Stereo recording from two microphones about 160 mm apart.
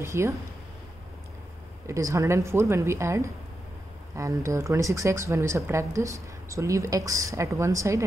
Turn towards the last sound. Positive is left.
turn(degrees=-20)  # may be behind; listen again after turning